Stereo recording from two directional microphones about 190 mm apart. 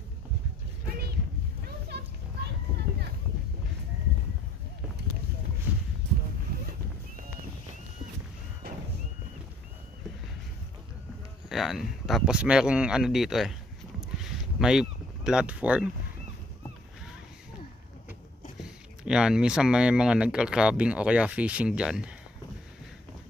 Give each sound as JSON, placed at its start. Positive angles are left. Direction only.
{"t": 1.9, "sound": "children playing", "side_deg": -60}
{"t": 11.4, "sound": "speech", "side_deg": 0}
{"t": 14.6, "sound": "speech", "side_deg": -5}
{"t": 18.6, "sound": "speech", "side_deg": -5}